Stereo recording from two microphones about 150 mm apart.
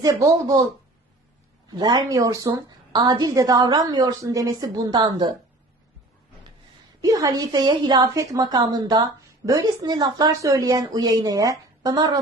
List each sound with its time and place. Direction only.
0.0 s a woman's voice: 20° right (ahead or behind)
7.0 s a woman's voice: 25° right (ahead or behind)